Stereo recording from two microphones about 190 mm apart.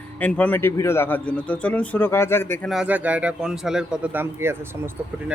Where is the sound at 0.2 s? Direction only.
10° left (ahead or behind).